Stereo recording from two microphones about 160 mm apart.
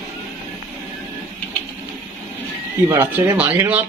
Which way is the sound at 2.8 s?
20° right (ahead or behind).